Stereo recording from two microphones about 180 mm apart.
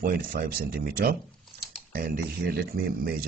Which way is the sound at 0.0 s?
55° right (ahead or behind).